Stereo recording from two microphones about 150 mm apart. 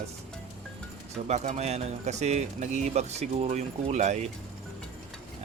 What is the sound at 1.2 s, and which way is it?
Speech, 50° right (ahead or behind).